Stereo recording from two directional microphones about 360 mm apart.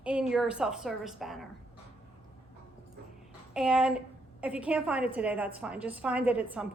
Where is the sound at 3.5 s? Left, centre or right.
Centre.